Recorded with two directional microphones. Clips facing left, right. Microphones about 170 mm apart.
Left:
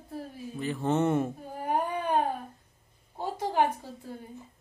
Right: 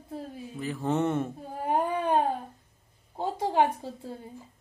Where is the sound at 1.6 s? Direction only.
25° right (ahead or behind).